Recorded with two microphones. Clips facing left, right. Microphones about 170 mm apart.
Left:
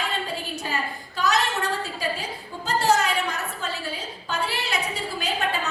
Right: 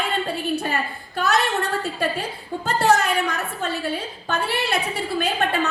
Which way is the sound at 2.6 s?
60° right (ahead or behind).